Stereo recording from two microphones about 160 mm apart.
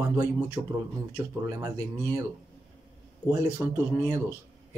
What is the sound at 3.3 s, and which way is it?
Speech, 15° right (ahead or behind).